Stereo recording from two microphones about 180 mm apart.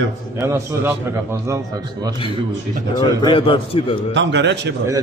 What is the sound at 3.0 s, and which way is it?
A man's voice, 25° left (ahead or behind).